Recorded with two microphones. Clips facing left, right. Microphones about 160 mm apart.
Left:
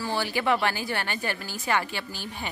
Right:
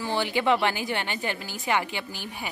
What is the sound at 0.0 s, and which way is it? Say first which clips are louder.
Speech: right 2 dB; 20° right (ahead or behind).